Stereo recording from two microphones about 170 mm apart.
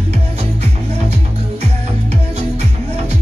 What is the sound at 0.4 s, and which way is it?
Music, 40° right (ahead or behind).